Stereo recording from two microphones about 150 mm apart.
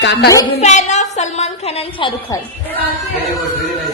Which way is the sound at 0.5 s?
50° left (ahead or behind).